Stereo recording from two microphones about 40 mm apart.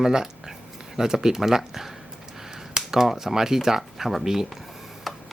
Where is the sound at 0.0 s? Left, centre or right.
Centre.